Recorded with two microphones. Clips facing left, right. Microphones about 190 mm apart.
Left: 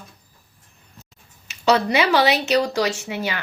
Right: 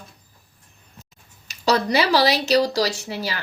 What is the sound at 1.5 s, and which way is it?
Speech, 40° right (ahead or behind).